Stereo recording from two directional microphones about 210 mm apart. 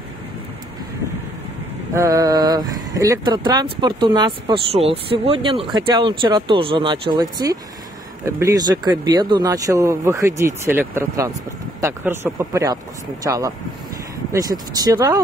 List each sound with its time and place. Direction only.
2.0 s speech: 15° right (ahead or behind)